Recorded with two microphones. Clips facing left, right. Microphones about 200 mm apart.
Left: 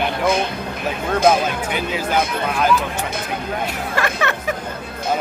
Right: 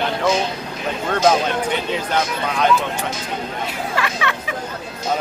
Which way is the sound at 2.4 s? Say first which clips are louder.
Even; 5° left (ahead or behind).